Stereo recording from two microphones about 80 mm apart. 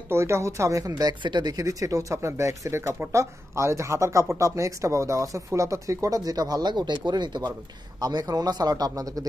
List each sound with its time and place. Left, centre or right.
0.1 s speech: right
1.2 s speech: right
1.5 s speech: right
6.7 s speech: right